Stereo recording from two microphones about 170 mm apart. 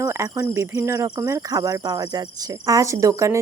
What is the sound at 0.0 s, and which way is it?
Speech, 20° right (ahead or behind).